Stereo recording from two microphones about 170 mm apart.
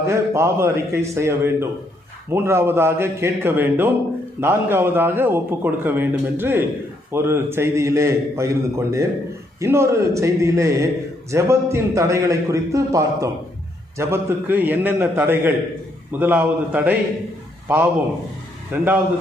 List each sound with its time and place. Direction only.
0.1 s a man's voice: 15° right (ahead or behind)
18.7 s a man's voice: 10° right (ahead or behind)